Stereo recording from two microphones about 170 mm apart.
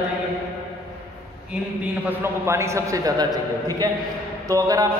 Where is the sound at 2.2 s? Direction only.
15° right (ahead or behind).